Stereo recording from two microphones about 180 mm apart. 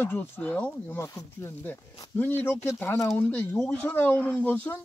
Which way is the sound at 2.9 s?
5° left (ahead or behind).